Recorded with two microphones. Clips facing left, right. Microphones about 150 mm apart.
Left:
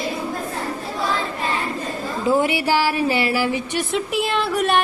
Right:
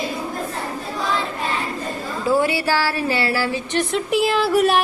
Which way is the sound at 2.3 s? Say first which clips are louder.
Even; 20° left (ahead or behind).